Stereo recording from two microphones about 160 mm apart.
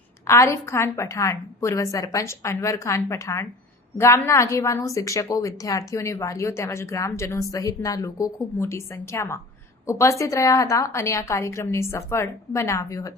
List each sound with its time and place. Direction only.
0.3 s a woman's voice: 20° left (ahead or behind)